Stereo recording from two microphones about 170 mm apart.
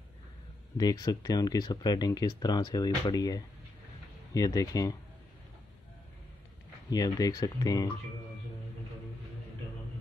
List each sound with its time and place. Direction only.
0.7 s speech: 20° left (ahead or behind)
6.9 s speech: 20° left (ahead or behind)